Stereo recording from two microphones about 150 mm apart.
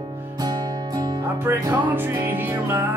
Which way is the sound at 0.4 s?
25° right (ahead or behind).